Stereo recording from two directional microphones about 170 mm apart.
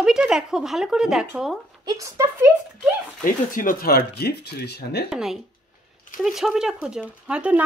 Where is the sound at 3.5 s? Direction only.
55° left (ahead or behind); by 5.0 s 75° left (ahead or behind).